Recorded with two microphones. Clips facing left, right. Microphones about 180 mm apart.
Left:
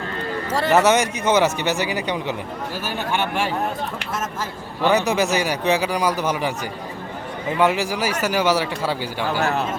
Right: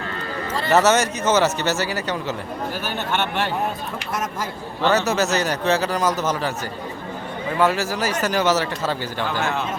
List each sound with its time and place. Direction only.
0.7 s speech: 15° left (ahead or behind)
4.8 s speech: 15° left (ahead or behind)
7.6 s speech: 15° left (ahead or behind)
9.4 s speech: 35° left (ahead or behind)